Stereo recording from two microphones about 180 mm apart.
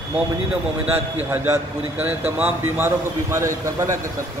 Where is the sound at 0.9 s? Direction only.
10° right (ahead or behind).